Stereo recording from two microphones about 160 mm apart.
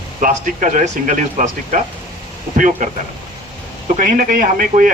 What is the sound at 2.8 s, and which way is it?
Speech, 55° right (ahead or behind).